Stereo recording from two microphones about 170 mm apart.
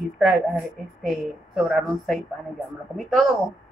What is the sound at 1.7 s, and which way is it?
A woman's voice, centre (ahead or behind).